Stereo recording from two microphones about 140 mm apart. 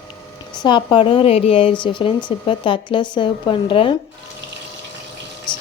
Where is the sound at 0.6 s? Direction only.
35° left (ahead or behind).